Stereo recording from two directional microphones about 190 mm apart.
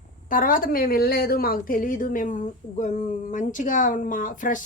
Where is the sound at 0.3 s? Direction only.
45° left (ahead or behind).